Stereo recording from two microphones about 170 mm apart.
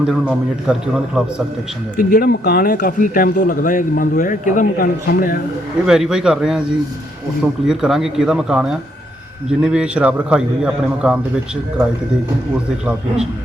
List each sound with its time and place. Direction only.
0.1 s a man's voice: centre (ahead or behind)
2.0 s speech: 60° left (ahead or behind)
5.8 s a man's voice: 5° right (ahead or behind)